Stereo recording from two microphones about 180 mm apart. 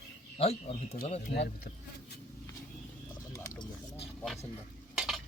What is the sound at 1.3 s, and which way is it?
Speech, 65° left (ahead or behind).